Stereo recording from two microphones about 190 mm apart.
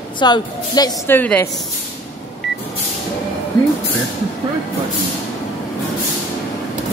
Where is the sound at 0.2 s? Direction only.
20° left (ahead or behind).